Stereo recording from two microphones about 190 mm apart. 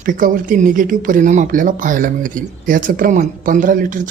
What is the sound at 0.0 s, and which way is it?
Speech, 45° right (ahead or behind).